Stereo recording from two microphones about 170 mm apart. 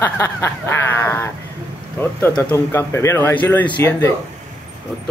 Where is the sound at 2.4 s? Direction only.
10° left (ahead or behind).